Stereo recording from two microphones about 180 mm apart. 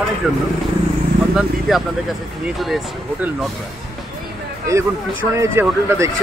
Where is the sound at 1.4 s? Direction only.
Centre (ahead or behind).